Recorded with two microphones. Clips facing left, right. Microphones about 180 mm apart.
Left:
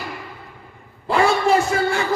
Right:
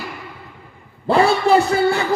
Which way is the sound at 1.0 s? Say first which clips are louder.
Right 2 dB; 35° right (ahead or behind).